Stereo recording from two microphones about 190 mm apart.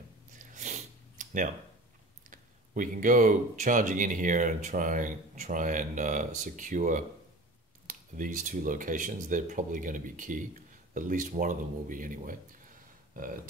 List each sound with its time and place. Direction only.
0.6 s snort: 40° right (ahead or behind)
2.7 s speech: 45° right (ahead or behind)